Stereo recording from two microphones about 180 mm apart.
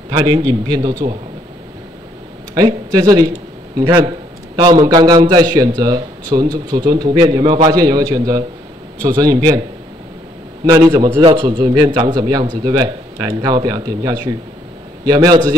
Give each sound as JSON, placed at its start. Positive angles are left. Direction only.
{"t": 0.1, "sound": "a man's voice", "side_deg": -20}
{"t": 2.5, "sound": "a man's voice", "side_deg": -20}
{"t": 10.6, "sound": "a man's voice", "side_deg": -25}